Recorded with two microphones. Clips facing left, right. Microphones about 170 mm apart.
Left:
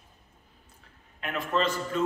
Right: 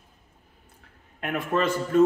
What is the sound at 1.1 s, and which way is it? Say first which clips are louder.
Speech: right 3 dB; 55° right (ahead or behind).